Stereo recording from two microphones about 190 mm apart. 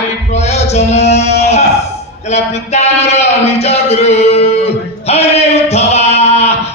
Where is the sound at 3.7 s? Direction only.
35° left (ahead or behind).